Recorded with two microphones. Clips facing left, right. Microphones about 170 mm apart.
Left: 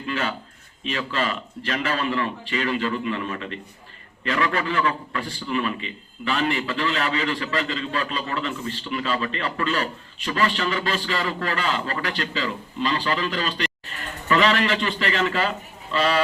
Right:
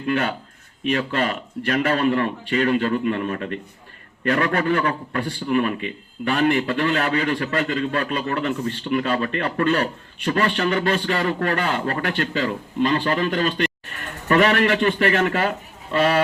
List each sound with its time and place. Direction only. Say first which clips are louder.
0.0 s a man's voice: right 5 dB; 55° right (ahead or behind)